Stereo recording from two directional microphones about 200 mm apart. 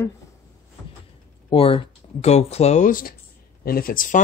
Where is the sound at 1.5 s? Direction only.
25° left (ahead or behind).